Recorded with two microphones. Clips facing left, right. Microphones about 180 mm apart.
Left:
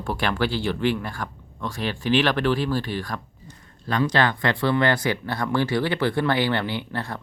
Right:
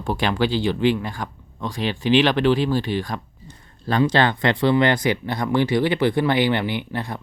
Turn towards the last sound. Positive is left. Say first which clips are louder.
# right 2 dB
turn(degrees=-15)  # may be behind; listen again after turning